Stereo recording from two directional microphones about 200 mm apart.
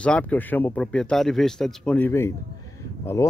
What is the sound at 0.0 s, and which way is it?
Speech, 5° left (ahead or behind).